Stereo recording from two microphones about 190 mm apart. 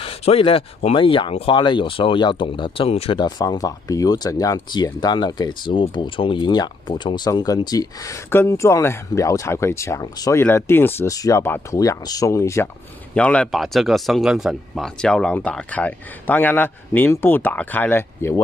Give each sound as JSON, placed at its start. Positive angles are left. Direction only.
{"t": 0.0, "sound": "speech", "side_deg": 30}